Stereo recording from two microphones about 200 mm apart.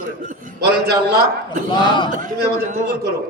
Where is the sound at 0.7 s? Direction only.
50° right (ahead or behind).